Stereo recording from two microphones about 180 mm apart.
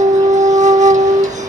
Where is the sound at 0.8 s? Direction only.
40° right (ahead or behind).